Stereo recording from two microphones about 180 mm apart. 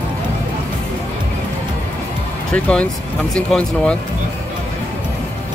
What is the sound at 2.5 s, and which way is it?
Speech, 5° left (ahead or behind).